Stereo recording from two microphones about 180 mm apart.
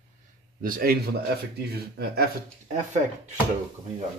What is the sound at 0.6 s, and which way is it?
A man's voice, 50° right (ahead or behind).